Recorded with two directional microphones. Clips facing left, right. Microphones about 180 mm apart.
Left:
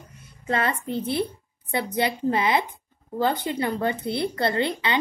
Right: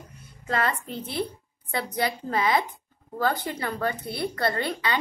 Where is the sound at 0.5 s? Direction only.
25° left (ahead or behind).